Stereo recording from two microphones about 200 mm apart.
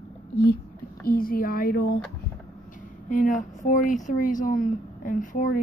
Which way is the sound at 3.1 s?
45° left (ahead or behind).